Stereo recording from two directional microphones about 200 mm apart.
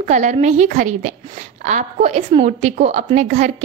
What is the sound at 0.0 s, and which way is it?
A woman's voice, 40° right (ahead or behind).